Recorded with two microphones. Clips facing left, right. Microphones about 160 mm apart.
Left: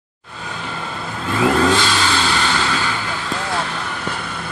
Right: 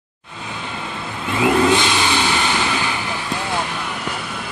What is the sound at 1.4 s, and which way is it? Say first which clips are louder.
Vehicle: even; 15° right (ahead or behind).